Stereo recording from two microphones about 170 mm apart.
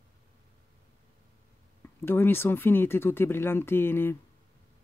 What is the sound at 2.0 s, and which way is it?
Speech, 15° left (ahead or behind).